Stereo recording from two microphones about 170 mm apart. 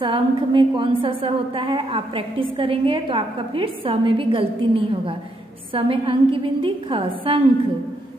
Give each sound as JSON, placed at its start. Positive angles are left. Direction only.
{"t": 0.0, "sound": "a woman's voice", "side_deg": -30}